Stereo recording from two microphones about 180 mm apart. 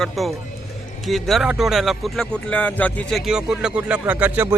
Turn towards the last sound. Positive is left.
turn(degrees=-10)  # may be behind; listen again after turning